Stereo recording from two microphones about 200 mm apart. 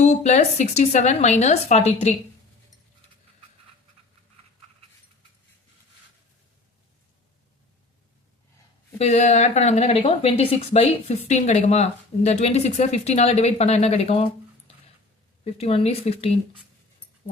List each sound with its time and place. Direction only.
0.0 s speech: 35° left (ahead or behind)
9.0 s speech: 35° left (ahead or behind)
15.4 s speech: 30° left (ahead or behind)